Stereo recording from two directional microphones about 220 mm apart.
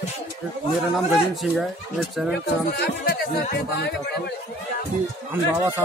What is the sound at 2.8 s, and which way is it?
Speech, 45° left (ahead or behind).